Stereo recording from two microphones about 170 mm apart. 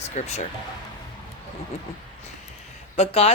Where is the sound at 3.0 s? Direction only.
35° left (ahead or behind).